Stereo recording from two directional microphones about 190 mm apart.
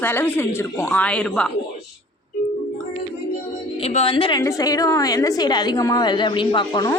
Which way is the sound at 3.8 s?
30° left (ahead or behind).